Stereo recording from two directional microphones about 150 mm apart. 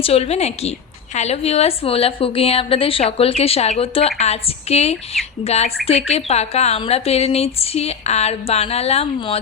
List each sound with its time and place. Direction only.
0.0 s a woman's voice: 45° left (ahead or behind)